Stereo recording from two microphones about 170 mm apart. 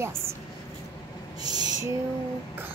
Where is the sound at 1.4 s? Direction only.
25° right (ahead or behind).